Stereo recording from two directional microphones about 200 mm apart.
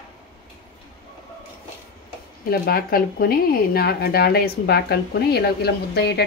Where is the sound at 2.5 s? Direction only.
50° left (ahead or behind).